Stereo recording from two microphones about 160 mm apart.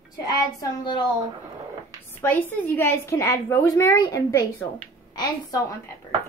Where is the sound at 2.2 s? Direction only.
15° left (ahead or behind).